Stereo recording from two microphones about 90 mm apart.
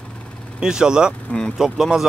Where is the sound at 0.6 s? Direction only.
10° right (ahead or behind).